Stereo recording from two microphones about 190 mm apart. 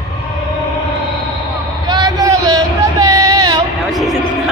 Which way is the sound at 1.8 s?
20° right (ahead or behind).